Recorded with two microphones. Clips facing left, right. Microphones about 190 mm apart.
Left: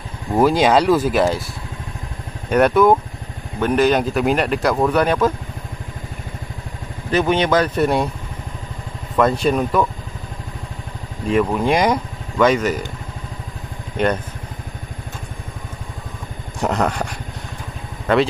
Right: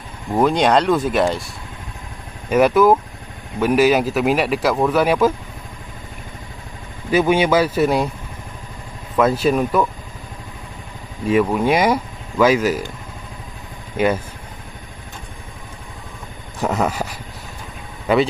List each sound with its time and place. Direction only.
0.3 s speech: 5° left (ahead or behind)
2.5 s speech: centre (ahead or behind)
7.1 s speech: 10° right (ahead or behind)
9.1 s speech: 5° right (ahead or behind)
11.2 s speech: 5° right (ahead or behind)
13.9 s speech: 5° right (ahead or behind)
16.5 s a sound: 5° right (ahead or behind)
18.1 s speech: 5° right (ahead or behind)